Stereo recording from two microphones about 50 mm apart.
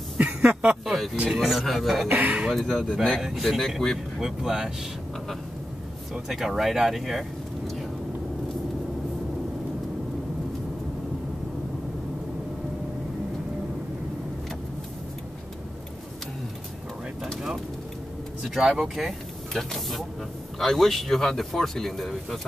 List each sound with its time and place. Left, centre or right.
0.2 s a sound: right
0.8 s speech: centre
1.3 s speech: centre
2.0 s speech: right
2.6 s speech: centre
3.2 s speech: centre
4.2 s speech: centre
6.1 s speech: centre
18.5 s speech: centre